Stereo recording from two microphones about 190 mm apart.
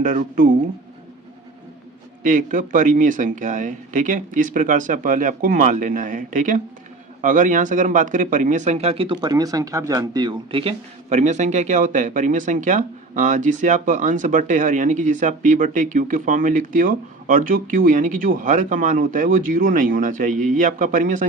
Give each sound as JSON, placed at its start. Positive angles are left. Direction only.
{"t": 0.0, "sound": "speech", "side_deg": -45}
{"t": 2.2, "sound": "speech", "side_deg": -45}